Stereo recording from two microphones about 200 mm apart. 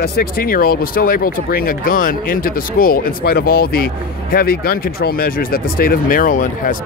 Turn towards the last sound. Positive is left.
turn(degrees=45)  # may be behind; listen again after turning